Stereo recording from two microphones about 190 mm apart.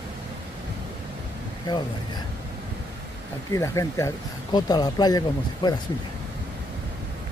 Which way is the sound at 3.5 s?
15° left (ahead or behind).